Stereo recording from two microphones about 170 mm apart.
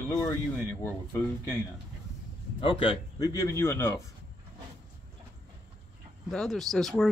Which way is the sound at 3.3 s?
20° left (ahead or behind).